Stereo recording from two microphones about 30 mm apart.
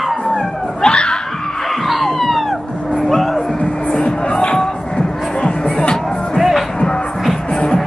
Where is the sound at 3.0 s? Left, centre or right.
Centre.